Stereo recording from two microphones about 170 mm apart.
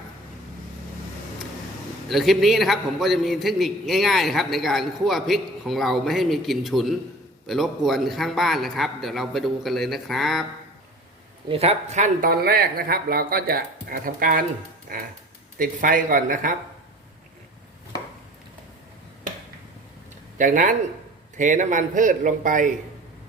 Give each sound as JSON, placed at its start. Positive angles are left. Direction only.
{"t": 2.0, "sound": "a man's voice", "side_deg": 0}
{"t": 11.4, "sound": "speech", "side_deg": -35}
{"t": 12.3, "sound": "a man's voice", "side_deg": -65}
{"t": 20.4, "sound": "a man's voice", "side_deg": -50}